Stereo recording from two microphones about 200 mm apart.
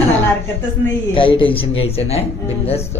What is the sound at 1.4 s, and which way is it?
Speech, 25° left (ahead or behind).